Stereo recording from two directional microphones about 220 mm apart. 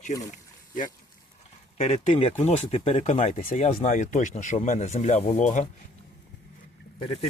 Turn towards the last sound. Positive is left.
turn(degrees=25)  # may be behind; listen again after turning